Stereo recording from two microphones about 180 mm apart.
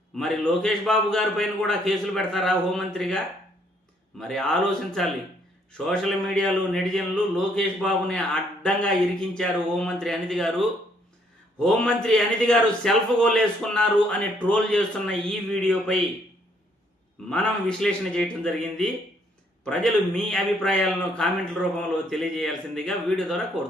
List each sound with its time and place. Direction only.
0.2 s a man's voice: 5° left (ahead or behind)
4.2 s a man's voice: 5° left (ahead or behind)
17.2 s a man's voice: 5° left (ahead or behind)